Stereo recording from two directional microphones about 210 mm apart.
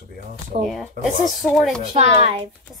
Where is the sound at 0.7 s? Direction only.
Centre (ahead or behind).